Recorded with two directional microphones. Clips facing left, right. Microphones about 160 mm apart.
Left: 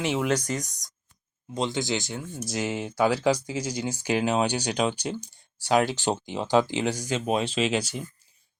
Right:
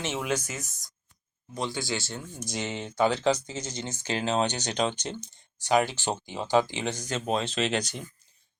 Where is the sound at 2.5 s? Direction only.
5° left (ahead or behind).